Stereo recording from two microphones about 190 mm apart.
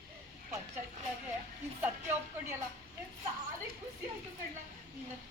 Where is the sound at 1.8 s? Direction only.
10° right (ahead or behind).